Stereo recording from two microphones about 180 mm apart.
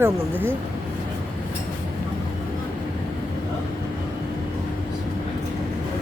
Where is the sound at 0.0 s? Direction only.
10° right (ahead or behind).